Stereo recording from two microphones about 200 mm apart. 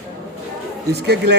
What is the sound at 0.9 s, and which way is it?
Speech, 55° right (ahead or behind).